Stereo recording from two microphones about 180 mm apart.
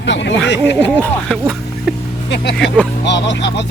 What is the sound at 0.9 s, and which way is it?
Speech, 5° left (ahead or behind).